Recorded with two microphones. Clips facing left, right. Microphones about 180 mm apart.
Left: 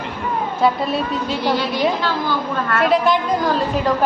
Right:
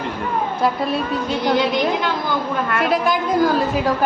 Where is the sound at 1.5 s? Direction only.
15° right (ahead or behind).